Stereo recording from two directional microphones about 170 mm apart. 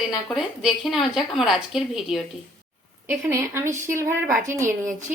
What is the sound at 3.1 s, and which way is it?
A woman's voice, 15° right (ahead or behind).